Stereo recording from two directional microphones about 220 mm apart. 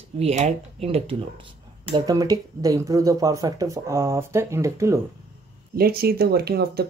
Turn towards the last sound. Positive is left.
turn(degrees=-45)  # may be behind; listen again after turning